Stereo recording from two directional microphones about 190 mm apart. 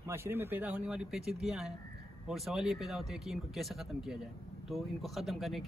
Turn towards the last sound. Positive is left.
turn(degrees=0)  # may be behind; listen again after turning